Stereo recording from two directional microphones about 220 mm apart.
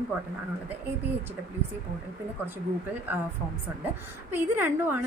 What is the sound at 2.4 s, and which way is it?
Speech, 10° right (ahead or behind).